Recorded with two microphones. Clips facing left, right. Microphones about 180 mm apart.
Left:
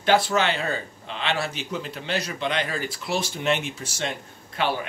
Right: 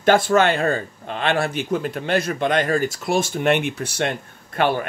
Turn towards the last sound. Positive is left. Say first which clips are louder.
# right 6 dB
turn(degrees=-55)  # may be behind; listen again after turning